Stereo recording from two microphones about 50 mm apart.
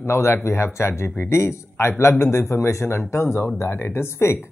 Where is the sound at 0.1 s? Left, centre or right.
Left.